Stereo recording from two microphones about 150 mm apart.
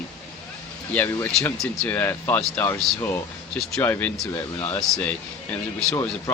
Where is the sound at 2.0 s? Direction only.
15° left (ahead or behind).